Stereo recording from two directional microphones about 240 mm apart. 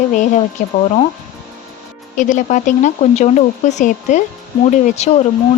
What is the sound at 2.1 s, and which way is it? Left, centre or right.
Speech, left.